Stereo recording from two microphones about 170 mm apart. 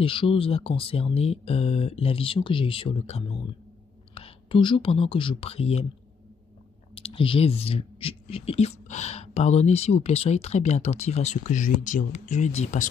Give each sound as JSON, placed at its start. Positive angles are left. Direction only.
{"t": 0.0, "sound": "speech", "side_deg": 30}
{"t": 7.0, "sound": "speech", "side_deg": 35}